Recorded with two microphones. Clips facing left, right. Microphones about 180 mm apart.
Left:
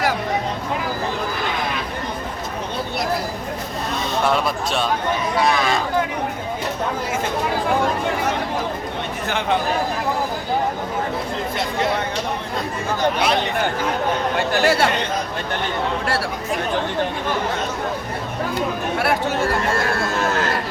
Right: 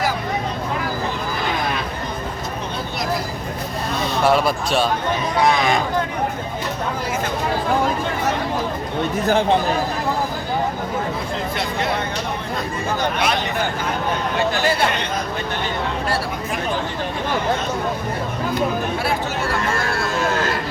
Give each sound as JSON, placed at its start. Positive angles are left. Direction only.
{"t": 4.2, "sound": "speech", "side_deg": -5}
{"t": 9.2, "sound": "speech", "side_deg": -35}
{"t": 14.3, "sound": "speech", "side_deg": 75}